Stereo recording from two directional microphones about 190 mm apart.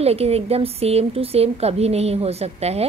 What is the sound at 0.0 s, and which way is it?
A woman's voice, 30° right (ahead or behind).